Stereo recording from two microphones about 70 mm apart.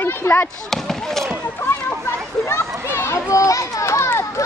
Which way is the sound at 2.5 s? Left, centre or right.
Left.